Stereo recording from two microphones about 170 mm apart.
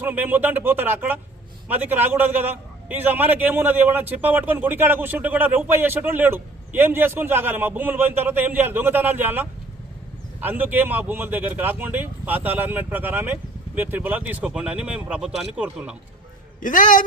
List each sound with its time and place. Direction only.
0.0 s a man's voice: 10° right (ahead or behind)
16.6 s a man's voice: 50° left (ahead or behind)